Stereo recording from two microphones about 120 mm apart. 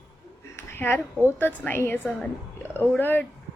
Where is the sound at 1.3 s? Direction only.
15° left (ahead or behind).